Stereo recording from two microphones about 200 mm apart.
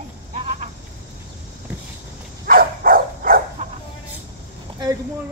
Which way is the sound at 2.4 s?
45° right (ahead or behind).